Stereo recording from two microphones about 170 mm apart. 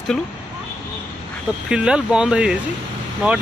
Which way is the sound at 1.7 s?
5° right (ahead or behind).